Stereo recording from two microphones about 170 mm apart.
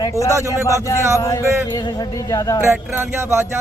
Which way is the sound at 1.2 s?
15° left (ahead or behind).